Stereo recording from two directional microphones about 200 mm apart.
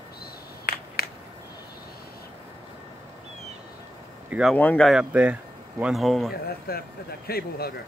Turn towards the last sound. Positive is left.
turn(degrees=50)  # may be behind; listen again after turning